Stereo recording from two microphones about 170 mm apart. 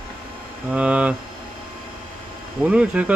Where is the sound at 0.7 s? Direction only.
5° right (ahead or behind).